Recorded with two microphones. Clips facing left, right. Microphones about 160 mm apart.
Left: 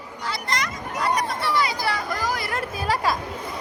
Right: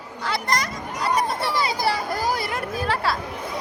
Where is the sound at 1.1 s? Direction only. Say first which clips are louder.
Right 1 dB; 30° right (ahead or behind).